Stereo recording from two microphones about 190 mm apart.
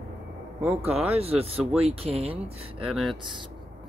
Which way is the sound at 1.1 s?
30° right (ahead or behind).